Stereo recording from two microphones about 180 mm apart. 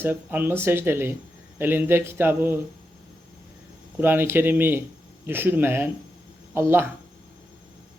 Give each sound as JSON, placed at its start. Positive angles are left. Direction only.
{"t": 0.0, "sound": "speech", "side_deg": -10}
{"t": 3.9, "sound": "speech", "side_deg": -10}